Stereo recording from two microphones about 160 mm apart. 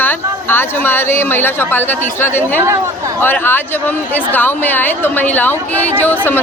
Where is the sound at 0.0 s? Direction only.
10° left (ahead or behind).